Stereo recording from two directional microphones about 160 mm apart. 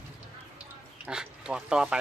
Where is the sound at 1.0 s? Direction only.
5° right (ahead or behind).